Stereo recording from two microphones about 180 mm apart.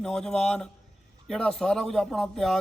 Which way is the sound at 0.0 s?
5° left (ahead or behind).